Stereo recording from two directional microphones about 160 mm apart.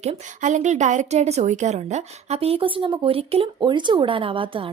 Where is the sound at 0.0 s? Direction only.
45° right (ahead or behind).